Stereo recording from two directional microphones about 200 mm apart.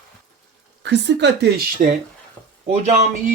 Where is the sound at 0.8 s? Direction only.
60° right (ahead or behind).